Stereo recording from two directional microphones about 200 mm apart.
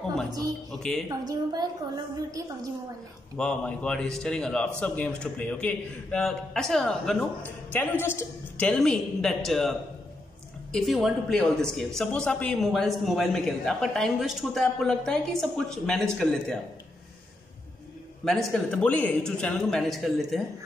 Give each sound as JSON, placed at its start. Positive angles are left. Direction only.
{"t": 0.7, "sound": "speech", "side_deg": 0}
{"t": 1.0, "sound": "a woman's voice", "side_deg": -20}
{"t": 3.3, "sound": "speech", "side_deg": 5}
{"t": 18.2, "sound": "speech", "side_deg": 0}